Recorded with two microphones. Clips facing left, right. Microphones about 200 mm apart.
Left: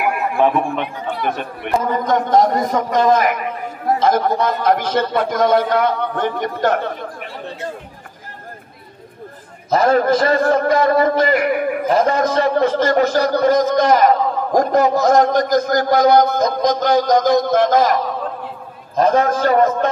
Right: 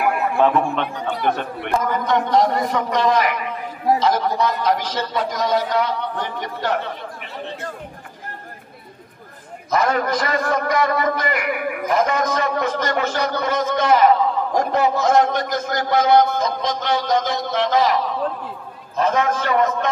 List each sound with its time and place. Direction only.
0.0 s speech: 15° left (ahead or behind)
2.0 s a man's voice: 45° left (ahead or behind)
9.7 s a man's voice: 30° left (ahead or behind)